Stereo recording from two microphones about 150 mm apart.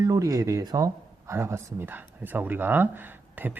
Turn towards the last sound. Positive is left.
turn(degrees=-10)  # may be behind; listen again after turning